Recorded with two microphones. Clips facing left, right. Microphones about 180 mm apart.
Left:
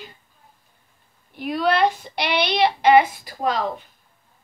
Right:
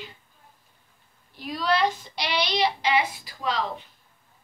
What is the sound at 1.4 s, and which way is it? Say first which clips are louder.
Speech: left 5 dB; 60° left (ahead or behind).